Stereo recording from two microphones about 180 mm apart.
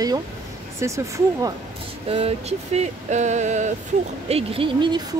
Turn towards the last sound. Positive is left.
turn(degrees=-25)  # may be behind; listen again after turning